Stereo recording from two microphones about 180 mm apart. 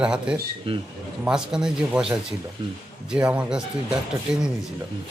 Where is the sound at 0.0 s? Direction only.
5° right (ahead or behind).